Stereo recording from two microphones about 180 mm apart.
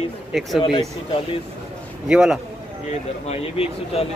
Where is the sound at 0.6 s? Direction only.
30° left (ahead or behind).